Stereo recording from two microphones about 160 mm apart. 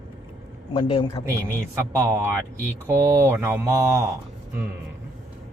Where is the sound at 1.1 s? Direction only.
10° left (ahead or behind).